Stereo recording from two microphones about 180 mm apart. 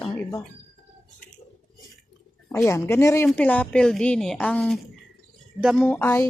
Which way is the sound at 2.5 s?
15° left (ahead or behind).